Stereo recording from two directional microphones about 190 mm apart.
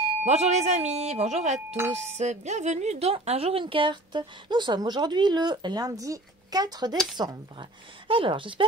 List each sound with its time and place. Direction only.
0.2 s speech: 35° right (ahead or behind)